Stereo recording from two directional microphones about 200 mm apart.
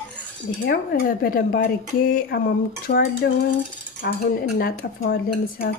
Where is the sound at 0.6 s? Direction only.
50° left (ahead or behind).